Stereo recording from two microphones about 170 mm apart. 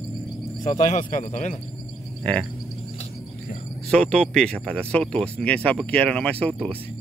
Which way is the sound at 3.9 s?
5° left (ahead or behind).